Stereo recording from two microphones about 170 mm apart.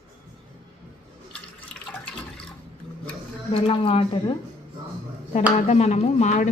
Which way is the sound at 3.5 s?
35° left (ahead or behind).